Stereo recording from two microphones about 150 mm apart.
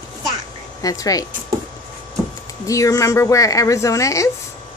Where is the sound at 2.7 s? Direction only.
20° left (ahead or behind).